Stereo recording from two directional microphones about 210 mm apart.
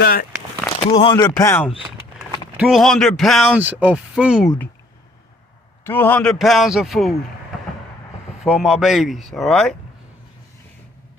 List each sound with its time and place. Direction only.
0.0 s speech: 45° left (ahead or behind)
0.9 s speech: 25° left (ahead or behind)
1.4 s speech: 10° left (ahead or behind)
2.6 s a man's voice: centre (ahead or behind)
5.8 s a man's voice: 10° left (ahead or behind)
8.4 s a man's voice: centre (ahead or behind)